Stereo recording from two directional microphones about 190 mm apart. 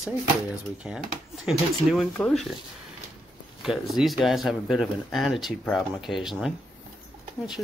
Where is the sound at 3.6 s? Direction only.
Centre (ahead or behind).